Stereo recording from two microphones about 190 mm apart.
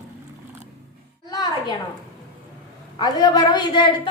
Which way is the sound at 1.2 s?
20° left (ahead or behind).